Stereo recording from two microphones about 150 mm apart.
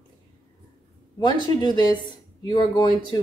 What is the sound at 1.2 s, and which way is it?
Speech, 30° left (ahead or behind).